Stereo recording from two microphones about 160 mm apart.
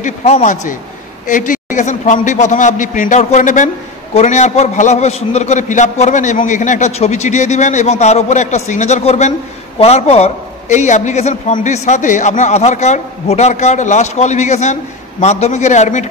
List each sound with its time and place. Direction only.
0.0 s a man's voice: 45° left (ahead or behind)